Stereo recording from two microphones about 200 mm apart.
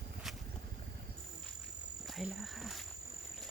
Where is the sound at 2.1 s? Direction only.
Centre (ahead or behind).